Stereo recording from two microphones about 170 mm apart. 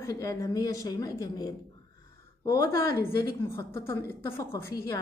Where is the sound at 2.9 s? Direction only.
15° left (ahead or behind).